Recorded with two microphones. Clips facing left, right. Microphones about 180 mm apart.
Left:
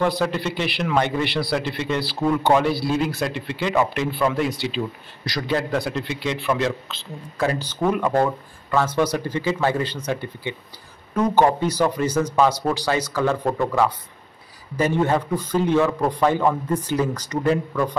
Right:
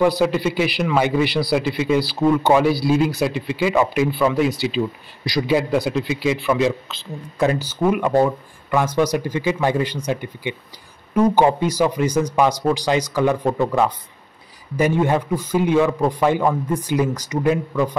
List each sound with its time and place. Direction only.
0.0 s speech: 5° right (ahead or behind)
7.3 s a man's voice: 20° right (ahead or behind)